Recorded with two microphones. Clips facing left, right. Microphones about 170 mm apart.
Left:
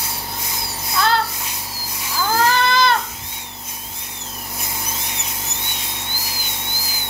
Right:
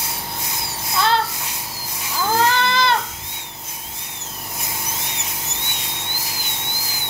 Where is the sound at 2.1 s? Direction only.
25° right (ahead or behind).